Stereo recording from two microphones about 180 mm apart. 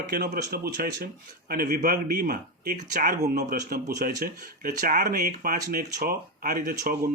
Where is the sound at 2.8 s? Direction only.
45° right (ahead or behind).